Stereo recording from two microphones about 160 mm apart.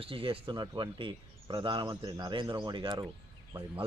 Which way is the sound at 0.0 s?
35° right (ahead or behind).